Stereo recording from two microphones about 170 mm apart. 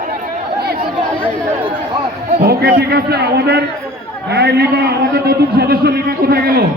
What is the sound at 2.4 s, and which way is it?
A man's voice, 65° right (ahead or behind).